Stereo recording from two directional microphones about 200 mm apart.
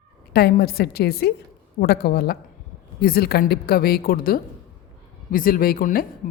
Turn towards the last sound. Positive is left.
turn(degrees=45)  # may be behind; listen again after turning